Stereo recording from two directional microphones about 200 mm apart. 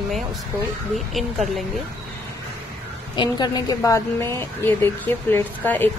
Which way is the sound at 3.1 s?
20° left (ahead or behind).